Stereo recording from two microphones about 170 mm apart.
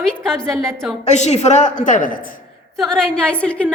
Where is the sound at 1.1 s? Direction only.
45° left (ahead or behind).